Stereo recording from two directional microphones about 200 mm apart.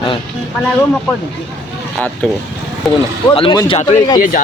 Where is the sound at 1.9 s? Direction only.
5° left (ahead or behind).